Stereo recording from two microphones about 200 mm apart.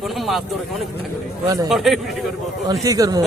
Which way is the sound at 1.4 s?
15° right (ahead or behind).